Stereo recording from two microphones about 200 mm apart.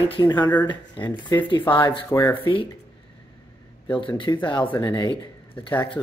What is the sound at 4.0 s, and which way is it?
Speech, 25° left (ahead or behind).